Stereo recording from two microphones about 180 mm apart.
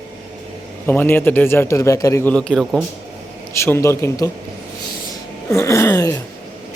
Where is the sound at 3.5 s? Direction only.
15° left (ahead or behind).